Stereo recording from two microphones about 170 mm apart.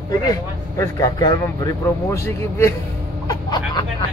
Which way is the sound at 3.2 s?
25° left (ahead or behind).